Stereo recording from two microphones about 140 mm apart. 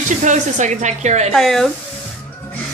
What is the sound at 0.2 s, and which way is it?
Speech, 60° right (ahead or behind).